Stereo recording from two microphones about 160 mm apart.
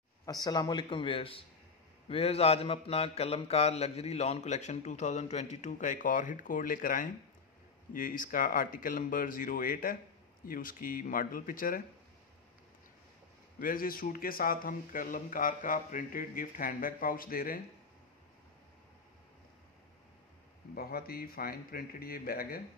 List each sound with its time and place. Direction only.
0.2 s a man's voice: 25° left (ahead or behind)
2.0 s mantra: 40° left (ahead or behind); by 7.1 s 60° left (ahead or behind)
7.9 s speech: 60° left (ahead or behind)
13.6 s speech: 60° left (ahead or behind)
20.7 s speech: 70° left (ahead or behind)